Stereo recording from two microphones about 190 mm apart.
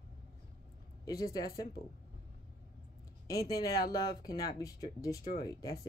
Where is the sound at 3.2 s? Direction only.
20° left (ahead or behind).